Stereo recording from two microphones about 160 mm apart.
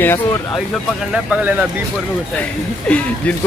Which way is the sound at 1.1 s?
10° right (ahead or behind).